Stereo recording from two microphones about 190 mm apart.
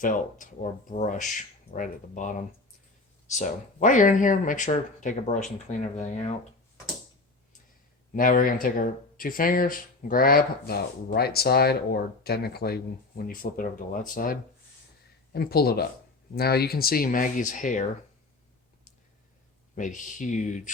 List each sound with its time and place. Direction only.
0.0 s speech: 45° left (ahead or behind)
8.1 s speech: 45° left (ahead or behind)
19.7 s speech: 40° left (ahead or behind)